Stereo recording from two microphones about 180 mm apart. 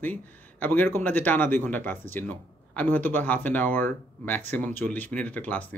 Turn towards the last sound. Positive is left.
turn(degrees=10)  # may be behind; listen again after turning